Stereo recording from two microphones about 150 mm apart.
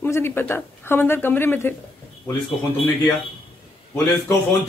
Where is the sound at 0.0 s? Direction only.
15° left (ahead or behind).